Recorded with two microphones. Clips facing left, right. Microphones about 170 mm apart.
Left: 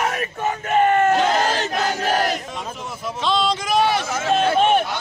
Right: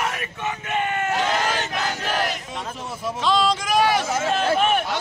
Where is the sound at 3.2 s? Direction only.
5° right (ahead or behind).